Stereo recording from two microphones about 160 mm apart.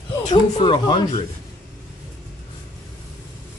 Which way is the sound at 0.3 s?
30° left (ahead or behind).